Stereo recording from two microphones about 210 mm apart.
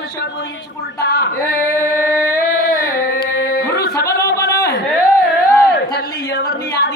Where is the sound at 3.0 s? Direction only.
45° left (ahead or behind).